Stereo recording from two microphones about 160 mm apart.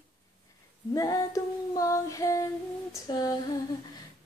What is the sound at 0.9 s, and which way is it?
Female singing, 20° left (ahead or behind).